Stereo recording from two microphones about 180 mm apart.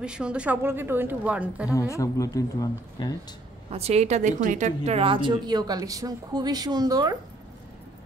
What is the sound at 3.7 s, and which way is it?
A woman's voice, 35° right (ahead or behind).